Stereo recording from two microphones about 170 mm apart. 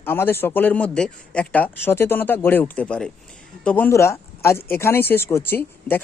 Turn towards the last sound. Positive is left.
turn(degrees=10)  # may be behind; listen again after turning